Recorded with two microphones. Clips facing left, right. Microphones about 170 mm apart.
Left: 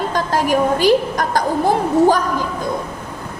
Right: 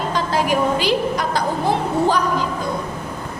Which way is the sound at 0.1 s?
45° left (ahead or behind).